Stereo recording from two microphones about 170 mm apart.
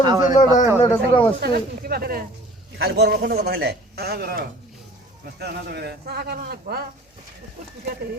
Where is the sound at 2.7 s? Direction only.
80° right.